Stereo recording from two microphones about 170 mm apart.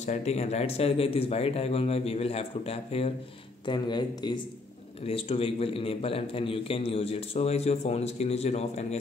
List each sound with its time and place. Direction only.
0.0 s a man's voice: 40° left (ahead or behind)